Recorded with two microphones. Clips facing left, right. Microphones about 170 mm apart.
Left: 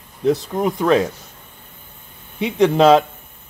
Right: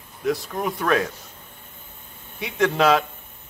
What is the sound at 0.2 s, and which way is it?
Speech, 25° left (ahead or behind).